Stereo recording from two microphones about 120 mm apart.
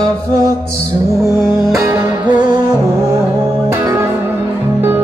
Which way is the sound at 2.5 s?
30° right (ahead or behind).